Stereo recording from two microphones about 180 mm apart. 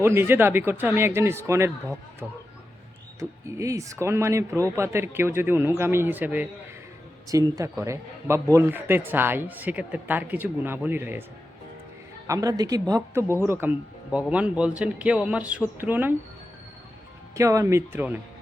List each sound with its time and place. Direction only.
0.0 s a man's voice: 15° right (ahead or behind)
3.2 s a man's voice: 15° right (ahead or behind)
12.3 s a man's voice: 20° right (ahead or behind)
17.3 s a man's voice: 15° right (ahead or behind)